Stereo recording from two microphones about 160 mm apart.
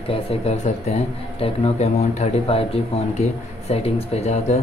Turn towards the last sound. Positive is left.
turn(degrees=45)  # may be behind; listen again after turning